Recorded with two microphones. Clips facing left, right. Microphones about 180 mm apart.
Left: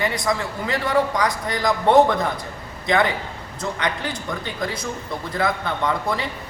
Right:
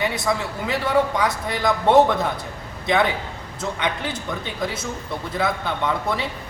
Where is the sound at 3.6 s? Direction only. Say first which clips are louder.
Even; 5° right (ahead or behind).